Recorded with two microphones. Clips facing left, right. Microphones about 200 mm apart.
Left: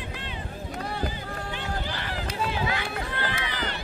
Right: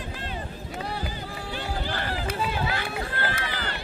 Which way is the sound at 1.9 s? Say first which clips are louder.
Right 3 dB; 45° right (ahead or behind).